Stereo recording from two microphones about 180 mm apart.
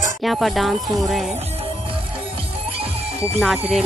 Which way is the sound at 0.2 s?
Centre (ahead or behind).